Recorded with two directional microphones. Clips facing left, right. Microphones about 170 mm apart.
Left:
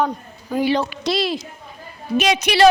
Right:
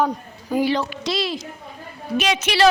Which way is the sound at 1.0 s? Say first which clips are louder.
Left 3 dB; 60° left (ahead or behind).